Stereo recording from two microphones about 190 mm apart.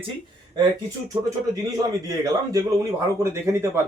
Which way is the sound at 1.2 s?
20° right (ahead or behind).